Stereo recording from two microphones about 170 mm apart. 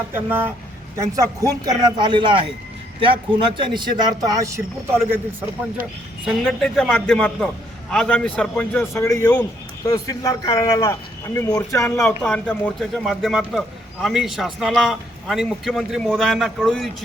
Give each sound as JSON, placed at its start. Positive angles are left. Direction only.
{"t": 0.1, "sound": "speech", "side_deg": -10}
{"t": 6.2, "sound": "a man's voice", "side_deg": 5}
{"t": 9.8, "sound": "a man's voice", "side_deg": 20}
{"t": 12.0, "sound": "a man's voice", "side_deg": 5}